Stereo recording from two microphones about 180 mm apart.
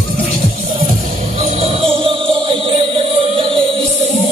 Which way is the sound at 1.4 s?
35° right (ahead or behind).